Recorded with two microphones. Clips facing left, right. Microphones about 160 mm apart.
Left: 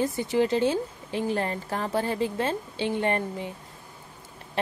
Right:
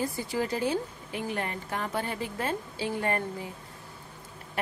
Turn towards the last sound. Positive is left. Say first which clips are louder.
# left 3 dB
turn(degrees=25)  # may be behind; listen again after turning